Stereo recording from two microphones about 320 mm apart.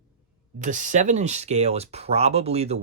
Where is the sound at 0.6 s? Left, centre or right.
Right.